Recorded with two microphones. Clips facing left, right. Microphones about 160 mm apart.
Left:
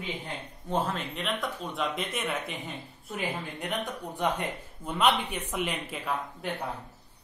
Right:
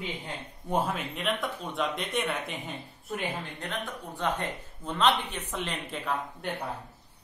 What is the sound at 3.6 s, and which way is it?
Speech, 15° left (ahead or behind).